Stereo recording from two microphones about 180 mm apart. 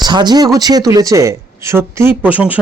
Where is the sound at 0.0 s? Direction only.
25° right (ahead or behind).